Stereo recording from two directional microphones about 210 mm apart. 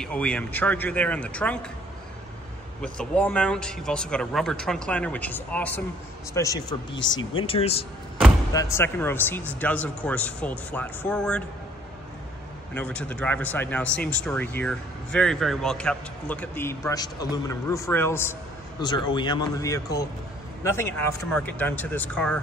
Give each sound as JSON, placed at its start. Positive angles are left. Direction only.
{"t": 0.0, "sound": "speech", "side_deg": 5}
{"t": 2.8, "sound": "speech", "side_deg": 5}
{"t": 7.3, "sound": "speech", "side_deg": 25}
{"t": 8.5, "sound": "speech", "side_deg": 10}
{"t": 12.7, "sound": "speech", "side_deg": 5}